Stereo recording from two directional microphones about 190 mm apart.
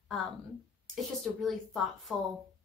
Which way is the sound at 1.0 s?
Centre (ahead or behind).